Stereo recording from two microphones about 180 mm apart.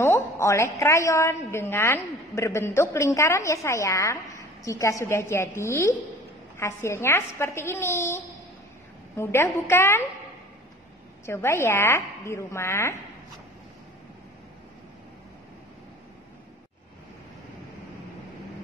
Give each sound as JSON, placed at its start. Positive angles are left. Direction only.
{"t": 0.0, "sound": "a woman's voice", "side_deg": 15}
{"t": 11.2, "sound": "a woman's voice", "side_deg": 15}